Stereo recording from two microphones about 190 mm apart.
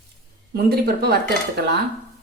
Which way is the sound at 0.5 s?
55° right (ahead or behind).